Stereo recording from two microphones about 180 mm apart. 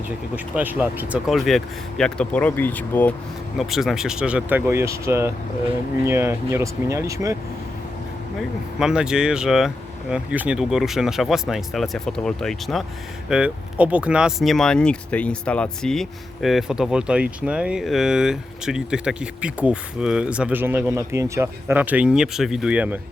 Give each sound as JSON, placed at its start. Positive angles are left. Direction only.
{"t": 0.3, "sound": "speech", "side_deg": -10}
{"t": 3.6, "sound": "speech", "side_deg": 0}
{"t": 8.4, "sound": "speech", "side_deg": -5}